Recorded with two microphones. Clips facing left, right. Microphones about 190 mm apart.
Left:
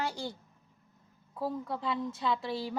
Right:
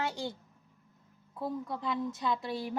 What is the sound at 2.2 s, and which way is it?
Speech, 15° right (ahead or behind).